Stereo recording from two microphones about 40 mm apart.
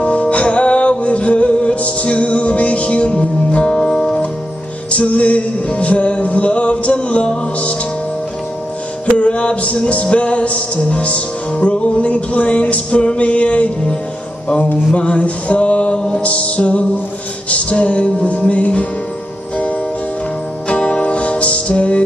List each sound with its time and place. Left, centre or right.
0.0 s music: left
9.0 s music: left
15.0 s music: left
20.6 s music: left